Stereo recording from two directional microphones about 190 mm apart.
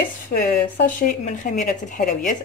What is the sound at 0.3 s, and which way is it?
Speech, 55° left (ahead or behind).